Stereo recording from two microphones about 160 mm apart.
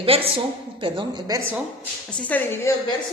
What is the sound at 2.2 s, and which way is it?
Speech, 10° left (ahead or behind).